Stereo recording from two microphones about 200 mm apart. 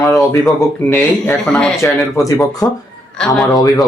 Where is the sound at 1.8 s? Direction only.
15° left (ahead or behind).